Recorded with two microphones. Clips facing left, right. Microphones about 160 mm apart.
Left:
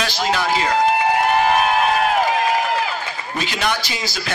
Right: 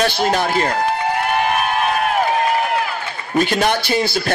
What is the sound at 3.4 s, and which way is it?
Speech, 50° right (ahead or behind).